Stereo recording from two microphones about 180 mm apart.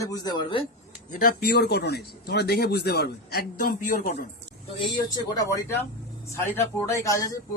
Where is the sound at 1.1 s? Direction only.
55° left (ahead or behind).